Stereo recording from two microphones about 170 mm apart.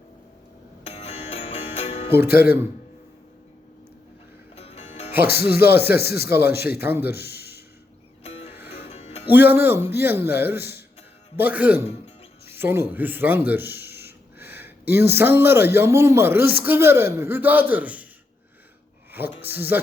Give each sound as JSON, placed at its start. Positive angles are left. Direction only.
{"t": 0.9, "sound": "music", "side_deg": 35}
{"t": 4.5, "sound": "music", "side_deg": 35}
{"t": 5.3, "sound": "speech", "side_deg": 65}
{"t": 5.7, "sound": "speech", "side_deg": -15}
{"t": 6.0, "sound": "speech", "side_deg": 65}
{"t": 6.2, "sound": "speech", "side_deg": -15}
{"t": 7.2, "sound": "a sound", "side_deg": 70}
{"t": 8.2, "sound": "music", "side_deg": 35}
{"t": 9.2, "sound": "a man's voice", "side_deg": -10}
{"t": 19.1, "sound": "speech", "side_deg": -10}